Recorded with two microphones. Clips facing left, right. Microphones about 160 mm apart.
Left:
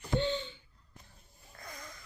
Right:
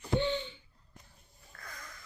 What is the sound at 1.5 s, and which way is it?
Wheeze, 20° left (ahead or behind).